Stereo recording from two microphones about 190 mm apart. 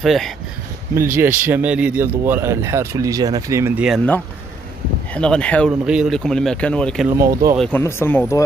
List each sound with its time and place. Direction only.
0.0 s speech: centre (ahead or behind)
0.9 s speech: 15° right (ahead or behind)
5.1 s speech: 5° left (ahead or behind)
7.1 s speech: 15° right (ahead or behind)
7.5 s speech: 5° left (ahead or behind)